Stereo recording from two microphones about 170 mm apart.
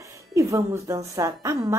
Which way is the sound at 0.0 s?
20° right (ahead or behind).